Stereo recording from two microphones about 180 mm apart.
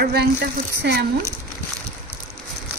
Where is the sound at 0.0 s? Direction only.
65° right (ahead or behind).